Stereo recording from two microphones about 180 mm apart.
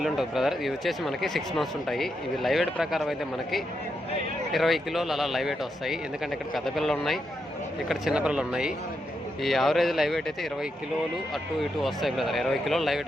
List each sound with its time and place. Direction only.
0.0 s speech: centre (ahead or behind)